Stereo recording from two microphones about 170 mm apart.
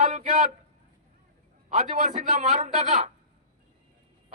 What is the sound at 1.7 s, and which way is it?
A man's voice, 45° right (ahead or behind).